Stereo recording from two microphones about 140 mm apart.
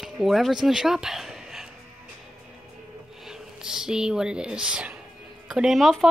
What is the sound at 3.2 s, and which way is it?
Speech, 5° right (ahead or behind).